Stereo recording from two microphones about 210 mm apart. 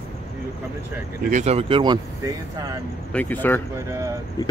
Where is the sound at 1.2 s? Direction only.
35° right (ahead or behind).